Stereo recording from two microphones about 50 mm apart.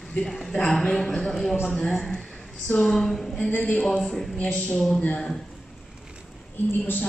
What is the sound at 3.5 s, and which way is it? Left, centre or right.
Speech, left.